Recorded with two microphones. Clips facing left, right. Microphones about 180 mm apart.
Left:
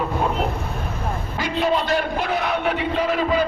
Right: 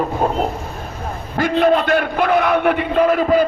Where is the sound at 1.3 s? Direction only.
55° right (ahead or behind).